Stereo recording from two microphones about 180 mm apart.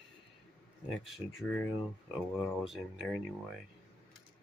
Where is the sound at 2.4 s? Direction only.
Centre (ahead or behind).